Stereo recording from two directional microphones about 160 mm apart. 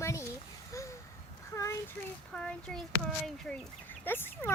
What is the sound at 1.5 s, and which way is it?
Child singing, 20° left (ahead or behind).